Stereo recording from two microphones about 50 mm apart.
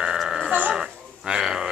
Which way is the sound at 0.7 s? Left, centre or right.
Centre.